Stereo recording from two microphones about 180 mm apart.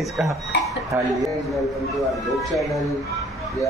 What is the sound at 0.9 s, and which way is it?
Speech, 15° right (ahead or behind).